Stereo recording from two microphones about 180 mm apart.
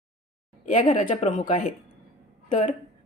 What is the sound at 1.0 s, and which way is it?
A woman's voice, 45° left (ahead or behind).